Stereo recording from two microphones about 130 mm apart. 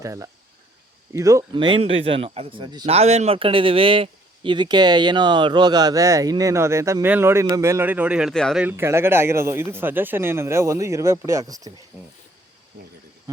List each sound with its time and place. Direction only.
0.0 s speech: 25° right (ahead or behind)
1.5 s speech: 40° right (ahead or behind)
2.8 s a man's voice: 55° right (ahead or behind); by 8.3 s 10° right (ahead or behind)
8.3 s speech: 5° left (ahead or behind)
8.5 s speech: 15° right (ahead or behind)